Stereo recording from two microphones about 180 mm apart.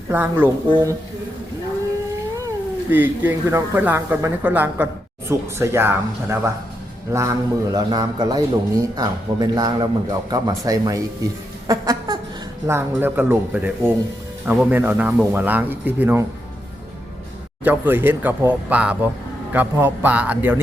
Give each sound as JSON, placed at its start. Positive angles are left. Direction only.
{"t": 0.1, "sound": "speech", "side_deg": -10}
{"t": 2.9, "sound": "a man's voice", "side_deg": -10}
{"t": 11.7, "sound": "a sound", "side_deg": -20}
{"t": 12.6, "sound": "speech", "side_deg": -10}
{"t": 17.6, "sound": "speech", "side_deg": -10}